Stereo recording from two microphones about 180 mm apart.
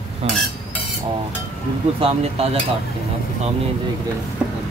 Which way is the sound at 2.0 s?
30° right (ahead or behind).